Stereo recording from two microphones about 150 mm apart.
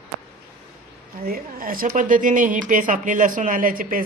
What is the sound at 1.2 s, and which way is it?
Speech, 75° right (ahead or behind).